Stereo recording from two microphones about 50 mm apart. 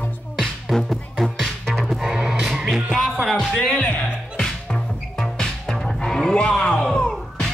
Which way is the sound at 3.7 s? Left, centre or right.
Left.